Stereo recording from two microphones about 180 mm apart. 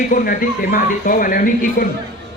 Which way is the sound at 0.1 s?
50° left (ahead or behind).